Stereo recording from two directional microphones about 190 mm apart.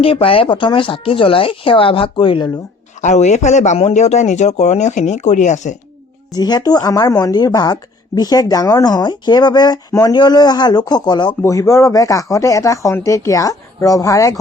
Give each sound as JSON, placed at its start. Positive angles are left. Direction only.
{"t": 0.0, "sound": "a woman's voice", "side_deg": 30}
{"t": 3.0, "sound": "a man's voice", "side_deg": 40}
{"t": 6.3, "sound": "a woman's voice", "side_deg": 20}